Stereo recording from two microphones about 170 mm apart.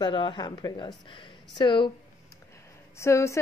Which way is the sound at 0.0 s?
30° left (ahead or behind).